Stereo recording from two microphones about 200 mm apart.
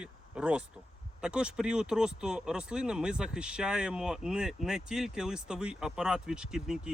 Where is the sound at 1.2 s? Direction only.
5° right (ahead or behind).